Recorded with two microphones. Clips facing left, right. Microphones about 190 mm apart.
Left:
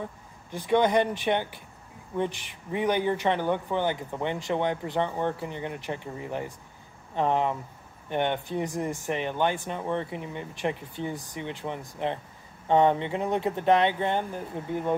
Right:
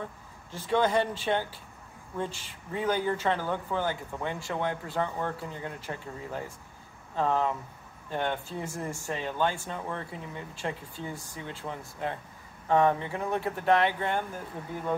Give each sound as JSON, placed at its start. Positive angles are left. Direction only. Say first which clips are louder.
{"t": 0.5, "sound": "speech", "louder": "left 3 dB", "side_deg": 15}